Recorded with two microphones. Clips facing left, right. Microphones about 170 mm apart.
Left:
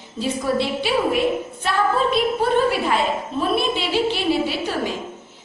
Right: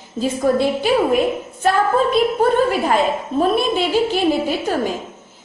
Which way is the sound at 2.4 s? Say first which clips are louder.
Right 3 dB; 45° right (ahead or behind).